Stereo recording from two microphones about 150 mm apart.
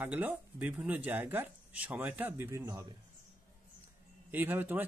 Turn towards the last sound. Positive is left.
turn(degrees=-15)  # may be behind; listen again after turning